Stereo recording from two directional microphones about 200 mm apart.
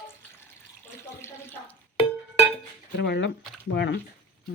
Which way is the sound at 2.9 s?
55° left (ahead or behind).